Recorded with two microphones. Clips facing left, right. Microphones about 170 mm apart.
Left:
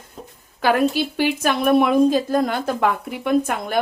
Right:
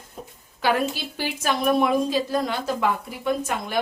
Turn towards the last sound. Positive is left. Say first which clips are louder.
# left 5 dB
turn(degrees=55)  # may be behind; listen again after turning